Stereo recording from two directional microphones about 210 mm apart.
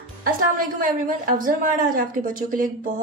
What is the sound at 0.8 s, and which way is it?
A woman's voice, 40° right (ahead or behind).